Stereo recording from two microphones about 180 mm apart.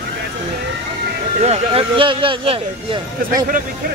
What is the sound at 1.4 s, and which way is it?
Speech, 35° right (ahead or behind).